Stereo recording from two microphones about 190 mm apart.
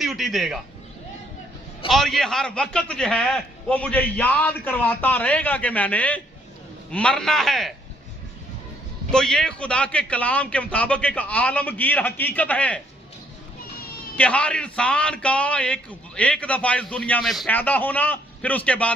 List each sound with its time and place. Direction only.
0.0 s speech: centre (ahead or behind)
1.9 s a man's voice: centre (ahead or behind)
9.1 s a man's voice: 5° left (ahead or behind)
14.1 s a man's voice: 5° left (ahead or behind)